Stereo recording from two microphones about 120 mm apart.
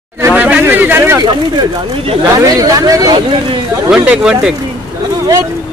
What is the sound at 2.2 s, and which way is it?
Speech, 30° right (ahead or behind).